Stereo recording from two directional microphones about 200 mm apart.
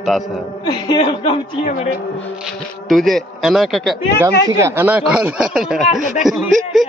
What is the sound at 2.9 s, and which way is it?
Speech, centre (ahead or behind).